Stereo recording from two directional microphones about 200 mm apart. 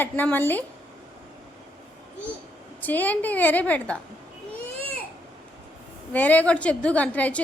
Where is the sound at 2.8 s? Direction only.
10° left (ahead or behind).